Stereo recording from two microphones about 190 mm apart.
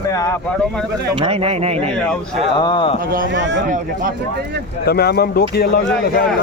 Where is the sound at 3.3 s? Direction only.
75° right (ahead or behind).